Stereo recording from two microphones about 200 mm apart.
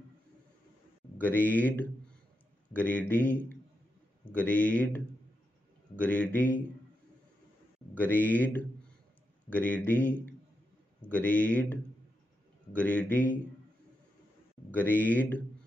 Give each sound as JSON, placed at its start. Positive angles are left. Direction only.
{"t": 1.1, "sound": "speech", "side_deg": 10}
{"t": 7.9, "sound": "speech", "side_deg": 10}
{"t": 14.7, "sound": "speech", "side_deg": 10}